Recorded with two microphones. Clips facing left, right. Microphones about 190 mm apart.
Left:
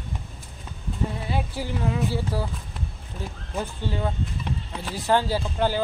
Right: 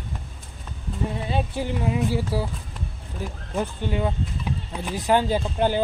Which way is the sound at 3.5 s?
15° right (ahead or behind).